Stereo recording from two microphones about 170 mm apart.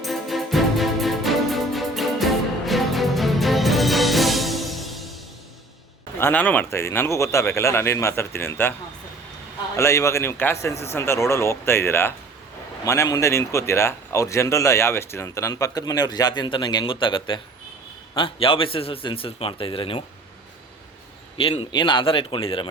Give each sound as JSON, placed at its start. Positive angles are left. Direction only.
{"t": 0.0, "sound": "music", "side_deg": 0}
{"t": 6.1, "sound": "speech", "side_deg": 10}
{"t": 9.7, "sound": "a man's voice", "side_deg": 15}
{"t": 21.3, "sound": "a man's voice", "side_deg": 30}